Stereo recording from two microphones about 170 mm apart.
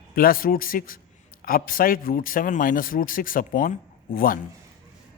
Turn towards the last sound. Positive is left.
turn(degrees=55)  # may be behind; listen again after turning